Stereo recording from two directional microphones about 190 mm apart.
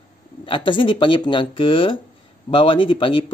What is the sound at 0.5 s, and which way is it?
Speech, 25° left (ahead or behind).